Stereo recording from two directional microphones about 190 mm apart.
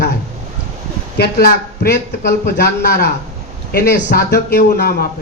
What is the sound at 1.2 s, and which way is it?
Speech, 55° left (ahead or behind).